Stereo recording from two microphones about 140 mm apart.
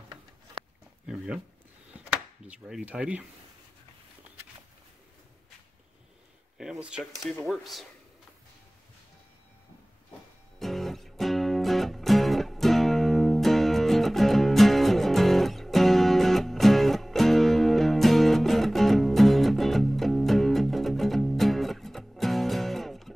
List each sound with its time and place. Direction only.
1.0 s a sound: 5° right (ahead or behind)
2.4 s speech: 10° right (ahead or behind)
6.6 s speech: 5° right (ahead or behind)
10.6 s music: centre (ahead or behind)